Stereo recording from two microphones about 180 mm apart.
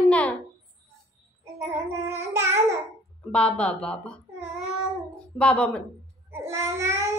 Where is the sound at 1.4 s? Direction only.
15° right (ahead or behind).